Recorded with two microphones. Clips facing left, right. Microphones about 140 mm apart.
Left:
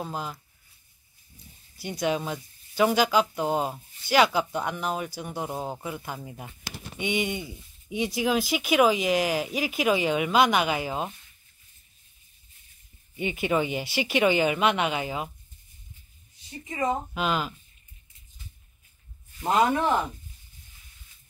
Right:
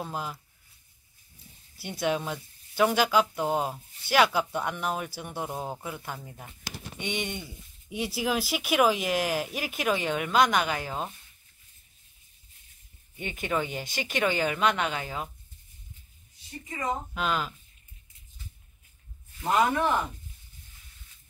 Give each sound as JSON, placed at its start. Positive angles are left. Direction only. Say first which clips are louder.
{"t": 0.0, "sound": "speech", "louder": "left 1 dB", "side_deg": 0}
{"t": 1.8, "sound": "speech", "louder": "left 1 dB", "side_deg": 0}
{"t": 13.1, "sound": "speech", "louder": "left 5 dB", "side_deg": 10}
{"t": 16.6, "sound": "speech", "louder": "left 5 dB", "side_deg": 25}
{"t": 17.1, "sound": "speech", "louder": "left 2 dB", "side_deg": 5}